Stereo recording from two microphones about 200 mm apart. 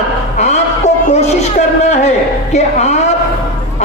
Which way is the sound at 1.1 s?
35° left (ahead or behind).